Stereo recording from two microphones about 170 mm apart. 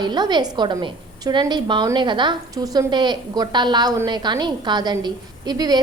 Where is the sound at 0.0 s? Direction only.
25° right (ahead or behind).